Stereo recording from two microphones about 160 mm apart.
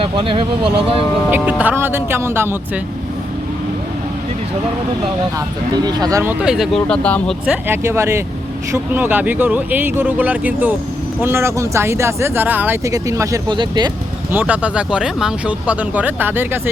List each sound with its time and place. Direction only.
0.0 s speech: 35° right (ahead or behind)
1.3 s speech: 10° right (ahead or behind)
5.7 s speech: 25° right (ahead or behind)
6.4 s speech: 5° right (ahead or behind)
7.4 s speech: 10° right (ahead or behind); by 13.9 s 25° right (ahead or behind)
14.3 s speech: 10° right (ahead or behind)